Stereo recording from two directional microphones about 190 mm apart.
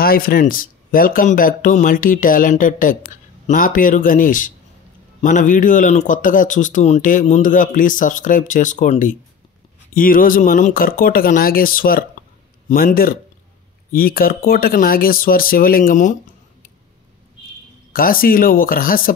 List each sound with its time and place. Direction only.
0.0 s speech: 50° left (ahead or behind)
17.9 s speech: 50° left (ahead or behind)